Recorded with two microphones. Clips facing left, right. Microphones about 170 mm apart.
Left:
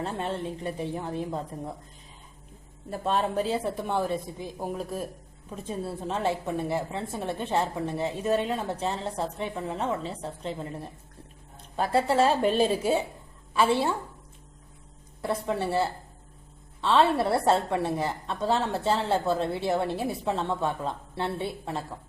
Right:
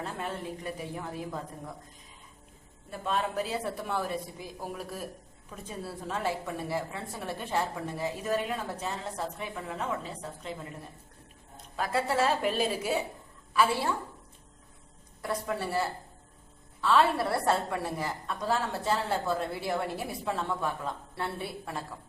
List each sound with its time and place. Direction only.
0.0 s a woman's voice: 30° left (ahead or behind)
2.9 s a woman's voice: 35° left (ahead or behind)
15.2 s a woman's voice: 25° left (ahead or behind)